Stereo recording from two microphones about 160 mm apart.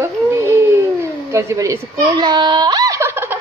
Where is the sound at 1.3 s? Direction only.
20° right (ahead or behind).